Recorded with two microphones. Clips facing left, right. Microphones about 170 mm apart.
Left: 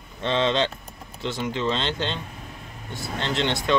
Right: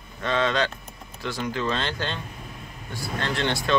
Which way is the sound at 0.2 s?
25° left (ahead or behind).